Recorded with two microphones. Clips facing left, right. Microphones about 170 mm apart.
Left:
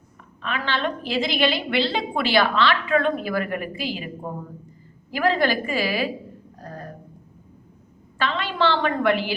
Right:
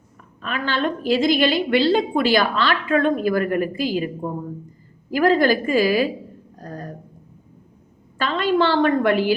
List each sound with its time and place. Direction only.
0.4 s a woman's voice: 45° right (ahead or behind)
5.1 s a woman's voice: 45° right (ahead or behind)
6.6 s a sound: 40° right (ahead or behind)
8.2 s a woman's voice: 45° right (ahead or behind)